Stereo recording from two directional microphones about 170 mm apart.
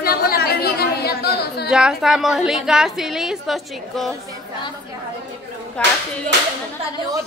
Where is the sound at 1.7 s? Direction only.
5° right (ahead or behind).